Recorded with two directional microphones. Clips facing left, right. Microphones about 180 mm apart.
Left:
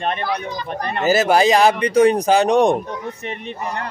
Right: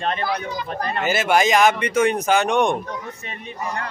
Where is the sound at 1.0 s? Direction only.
35° left (ahead or behind).